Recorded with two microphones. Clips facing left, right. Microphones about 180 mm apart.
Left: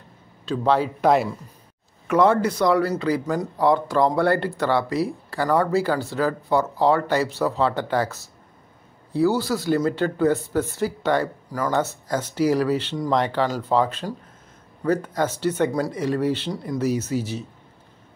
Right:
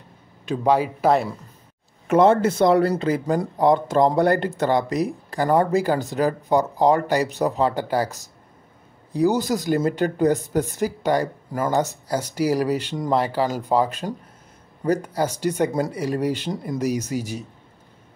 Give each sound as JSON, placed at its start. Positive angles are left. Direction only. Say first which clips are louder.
{"t": 0.5, "sound": "speech", "louder": "right 1 dB", "side_deg": -10}
{"t": 2.0, "sound": "speech", "louder": "right 2 dB", "side_deg": -25}
{"t": 11.5, "sound": "speech", "louder": "right 2 dB", "side_deg": -25}
{"t": 12.1, "sound": "speech", "louder": "left 3 dB", "side_deg": -10}